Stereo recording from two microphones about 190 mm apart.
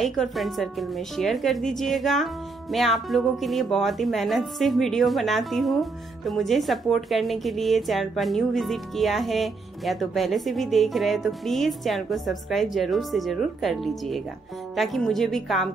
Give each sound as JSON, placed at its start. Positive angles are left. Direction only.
{"t": 0.0, "sound": "speech", "side_deg": 0}